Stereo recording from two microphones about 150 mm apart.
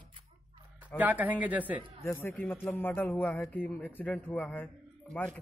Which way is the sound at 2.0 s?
15° left (ahead or behind).